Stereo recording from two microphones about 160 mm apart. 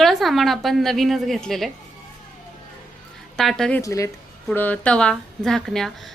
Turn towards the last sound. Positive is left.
turn(degrees=0)  # may be behind; listen again after turning